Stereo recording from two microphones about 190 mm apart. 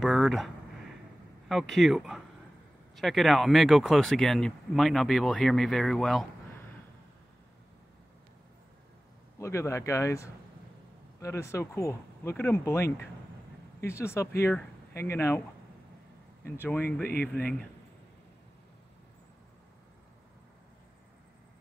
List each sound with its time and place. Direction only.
0.0 s a sound: centre (ahead or behind)
1.5 s speech: centre (ahead or behind)
9.4 s speech: 15° left (ahead or behind)
16.4 s speech: 10° left (ahead or behind)